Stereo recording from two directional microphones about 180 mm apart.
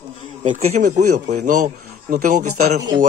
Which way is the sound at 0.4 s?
45° right (ahead or behind).